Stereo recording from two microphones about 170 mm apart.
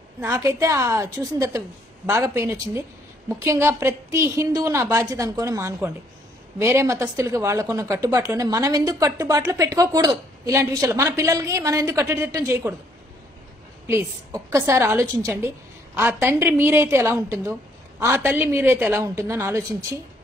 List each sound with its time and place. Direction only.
0.2 s a woman's voice: 15° right (ahead or behind)
13.8 s speech: 15° right (ahead or behind)